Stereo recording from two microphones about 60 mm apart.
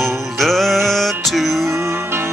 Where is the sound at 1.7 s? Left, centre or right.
Right.